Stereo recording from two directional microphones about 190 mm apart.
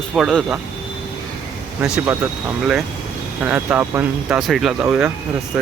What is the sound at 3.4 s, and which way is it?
Speech, 10° right (ahead or behind).